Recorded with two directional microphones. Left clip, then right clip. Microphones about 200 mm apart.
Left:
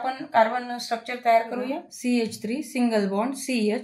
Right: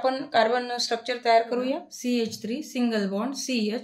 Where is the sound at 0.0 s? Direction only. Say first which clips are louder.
Left 1 dB; 60° right (ahead or behind).